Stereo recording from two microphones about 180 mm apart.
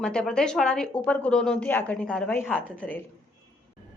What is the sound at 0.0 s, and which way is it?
Speech, 5° left (ahead or behind).